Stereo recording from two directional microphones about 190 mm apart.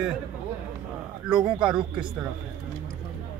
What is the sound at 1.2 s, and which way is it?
Speech, 5° right (ahead or behind).